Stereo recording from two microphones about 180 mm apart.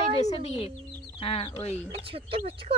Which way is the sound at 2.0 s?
30° right (ahead or behind).